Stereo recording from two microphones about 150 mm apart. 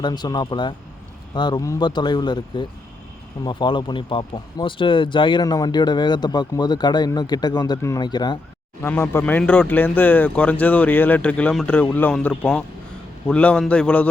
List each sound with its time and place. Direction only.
0.0 s speech: 30° left (ahead or behind)
8.8 s speech: 15° left (ahead or behind)